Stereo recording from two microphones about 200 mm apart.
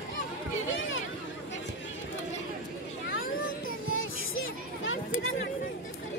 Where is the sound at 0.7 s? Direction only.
75° left (ahead or behind).